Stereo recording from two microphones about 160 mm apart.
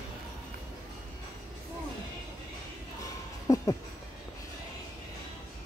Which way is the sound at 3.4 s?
20° left (ahead or behind).